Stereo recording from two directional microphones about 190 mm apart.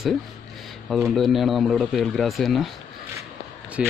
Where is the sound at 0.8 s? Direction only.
Centre (ahead or behind).